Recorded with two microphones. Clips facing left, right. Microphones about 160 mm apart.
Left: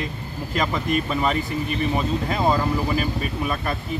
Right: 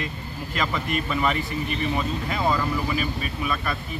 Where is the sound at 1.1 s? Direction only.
35° left (ahead or behind).